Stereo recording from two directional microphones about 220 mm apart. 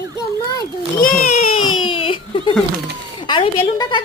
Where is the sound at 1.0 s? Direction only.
40° left (ahead or behind).